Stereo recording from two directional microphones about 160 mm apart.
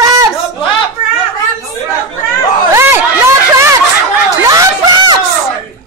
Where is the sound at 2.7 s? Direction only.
15° right (ahead or behind).